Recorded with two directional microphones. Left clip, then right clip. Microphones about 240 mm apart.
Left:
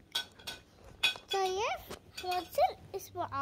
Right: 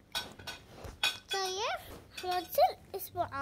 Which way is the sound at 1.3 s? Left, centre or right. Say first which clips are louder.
Left 2 dB; left.